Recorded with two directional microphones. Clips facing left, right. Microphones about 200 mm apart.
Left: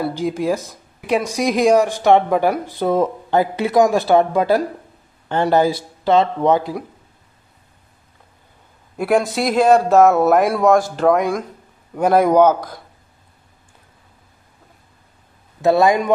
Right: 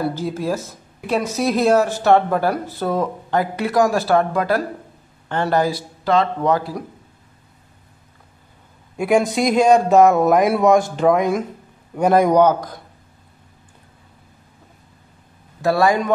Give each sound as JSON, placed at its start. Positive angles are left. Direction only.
{"t": 0.0, "sound": "speech", "side_deg": 15}
{"t": 8.9, "sound": "speech", "side_deg": 0}
{"t": 15.6, "sound": "speech", "side_deg": 20}